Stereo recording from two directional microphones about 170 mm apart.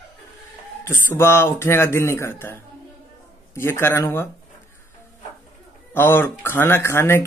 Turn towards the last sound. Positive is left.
turn(degrees=15)  # may be behind; listen again after turning